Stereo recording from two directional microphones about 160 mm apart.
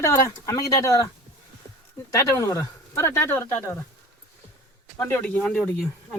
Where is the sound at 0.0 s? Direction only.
20° left (ahead or behind).